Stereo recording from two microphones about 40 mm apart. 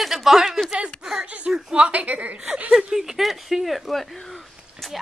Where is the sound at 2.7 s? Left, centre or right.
Centre.